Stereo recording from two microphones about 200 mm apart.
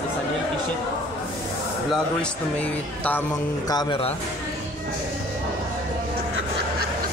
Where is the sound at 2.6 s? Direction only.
10° left (ahead or behind).